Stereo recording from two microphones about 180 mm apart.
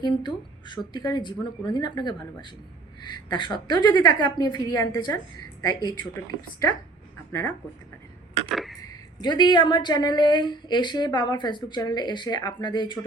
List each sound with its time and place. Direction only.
0.0 s a woman's voice: 25° left (ahead or behind)
8.4 s a sound: centre (ahead or behind)
8.8 s a woman's voice: 20° left (ahead or behind)